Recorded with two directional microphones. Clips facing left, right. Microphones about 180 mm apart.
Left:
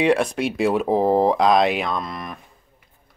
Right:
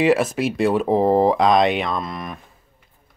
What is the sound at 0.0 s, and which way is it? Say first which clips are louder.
Speech: right 1 dB; 5° right (ahead or behind).